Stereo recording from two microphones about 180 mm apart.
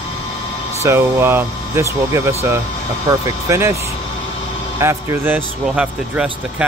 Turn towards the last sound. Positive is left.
turn(degrees=-5)  # may be behind; listen again after turning